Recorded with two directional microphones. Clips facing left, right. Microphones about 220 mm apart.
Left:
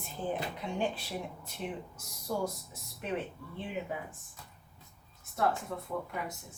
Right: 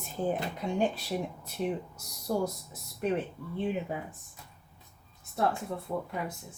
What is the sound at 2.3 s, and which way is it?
Speech, 45° right (ahead or behind).